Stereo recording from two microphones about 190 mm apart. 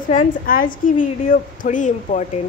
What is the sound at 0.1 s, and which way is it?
Speech, 45° left (ahead or behind).